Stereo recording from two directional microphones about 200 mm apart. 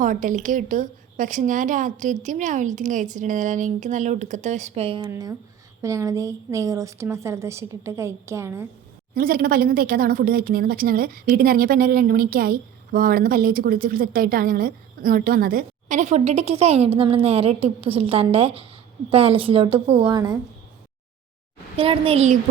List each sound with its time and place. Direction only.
0.0 s a woman's voice: 40° right (ahead or behind)
5.0 s a woman's voice: 15° right (ahead or behind)
9.1 s a woman's voice: 45° right (ahead or behind); by 20.4 s 20° right (ahead or behind)
21.8 s a child's voice: 30° right (ahead or behind)